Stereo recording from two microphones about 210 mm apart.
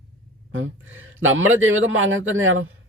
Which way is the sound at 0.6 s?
70° right (ahead or behind).